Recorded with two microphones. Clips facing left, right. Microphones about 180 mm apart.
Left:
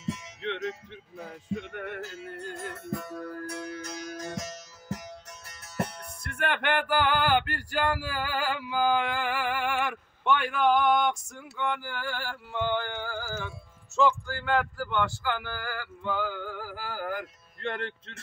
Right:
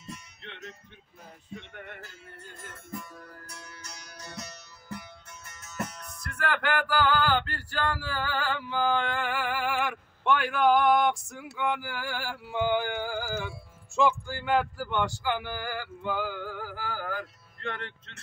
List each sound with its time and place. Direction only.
0.0 s music: 90° left; by 4.5 s 50° left (ahead or behind)
5.5 s music: 35° left (ahead or behind); by 16.2 s 15° right (ahead or behind)
16.2 s music: centre (ahead or behind)
17.7 s speech: 30° left (ahead or behind)